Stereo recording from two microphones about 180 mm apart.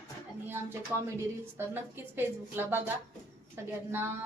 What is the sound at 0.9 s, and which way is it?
Speech, 10° right (ahead or behind).